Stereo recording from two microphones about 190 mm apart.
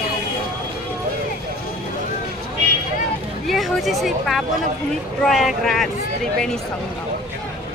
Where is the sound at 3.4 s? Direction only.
Centre (ahead or behind).